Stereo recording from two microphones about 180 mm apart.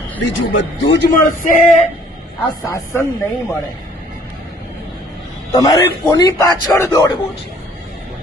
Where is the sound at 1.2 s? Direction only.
50° left (ahead or behind).